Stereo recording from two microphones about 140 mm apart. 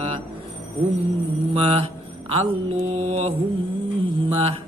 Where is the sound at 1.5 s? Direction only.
45° right (ahead or behind).